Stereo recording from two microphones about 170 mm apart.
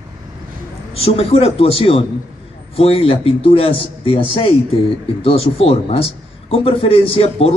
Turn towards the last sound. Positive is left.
turn(degrees=35)  # may be behind; listen again after turning